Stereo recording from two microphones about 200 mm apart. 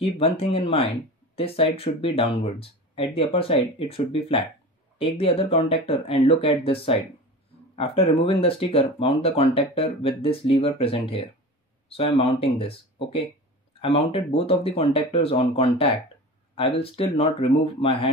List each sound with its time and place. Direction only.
0.0 s speech: 30° left (ahead or behind)